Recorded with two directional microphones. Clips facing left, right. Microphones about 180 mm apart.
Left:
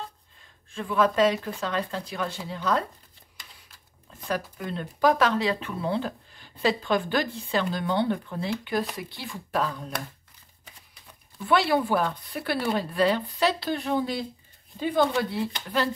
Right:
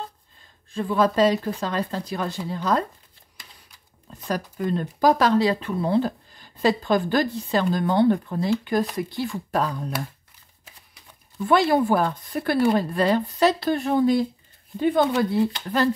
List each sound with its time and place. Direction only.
0.7 s speech: 35° right (ahead or behind)
4.3 s speech: 40° right (ahead or behind)
11.4 s speech: 45° right (ahead or behind)